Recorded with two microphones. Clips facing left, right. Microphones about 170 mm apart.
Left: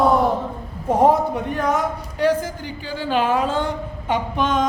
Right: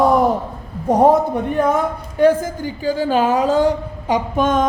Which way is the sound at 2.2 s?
50° right (ahead or behind).